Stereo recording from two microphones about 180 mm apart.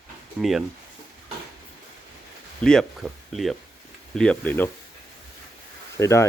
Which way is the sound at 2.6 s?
5° left (ahead or behind).